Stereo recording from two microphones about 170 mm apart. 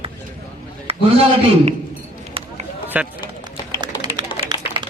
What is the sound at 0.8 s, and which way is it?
Speech, 35° right (ahead or behind).